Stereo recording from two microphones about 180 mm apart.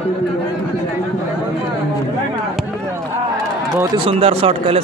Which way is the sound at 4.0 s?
35° right (ahead or behind).